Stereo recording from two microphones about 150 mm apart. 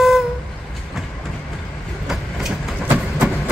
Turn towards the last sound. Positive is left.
turn(degrees=0)  # may be behind; listen again after turning